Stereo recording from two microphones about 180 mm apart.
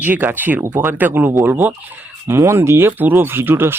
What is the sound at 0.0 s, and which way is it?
Speech, 10° right (ahead or behind).